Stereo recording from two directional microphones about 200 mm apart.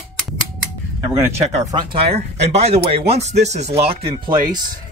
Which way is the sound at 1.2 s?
20° right (ahead or behind).